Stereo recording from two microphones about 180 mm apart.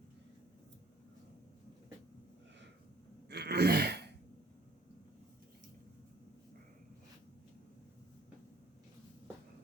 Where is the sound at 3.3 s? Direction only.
65° right (ahead or behind).